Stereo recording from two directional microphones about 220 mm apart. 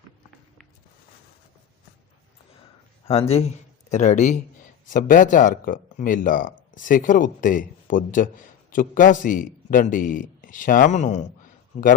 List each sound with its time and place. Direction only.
3.1 s speech: 25° left (ahead or behind)